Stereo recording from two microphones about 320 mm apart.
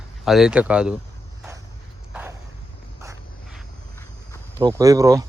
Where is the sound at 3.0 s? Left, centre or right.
Centre.